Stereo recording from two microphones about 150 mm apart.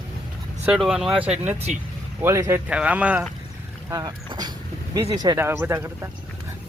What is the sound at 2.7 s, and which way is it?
Speech, 10° right (ahead or behind).